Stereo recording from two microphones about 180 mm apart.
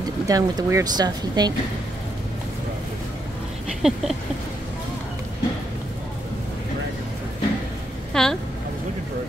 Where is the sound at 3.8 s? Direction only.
Centre (ahead or behind).